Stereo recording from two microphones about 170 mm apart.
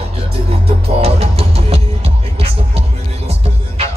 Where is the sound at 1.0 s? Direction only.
35° right (ahead or behind).